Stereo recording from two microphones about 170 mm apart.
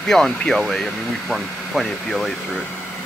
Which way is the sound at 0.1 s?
5° left (ahead or behind).